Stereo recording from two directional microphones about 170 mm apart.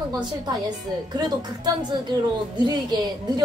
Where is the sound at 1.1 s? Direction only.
25° right (ahead or behind).